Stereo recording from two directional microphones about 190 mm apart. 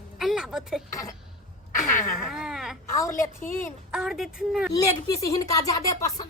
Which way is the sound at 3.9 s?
Centre (ahead or behind).